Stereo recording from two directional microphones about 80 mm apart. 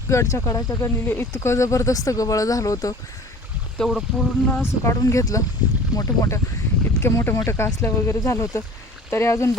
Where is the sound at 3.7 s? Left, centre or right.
Centre.